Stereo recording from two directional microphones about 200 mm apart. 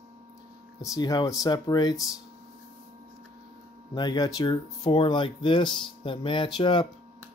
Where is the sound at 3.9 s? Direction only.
20° left (ahead or behind).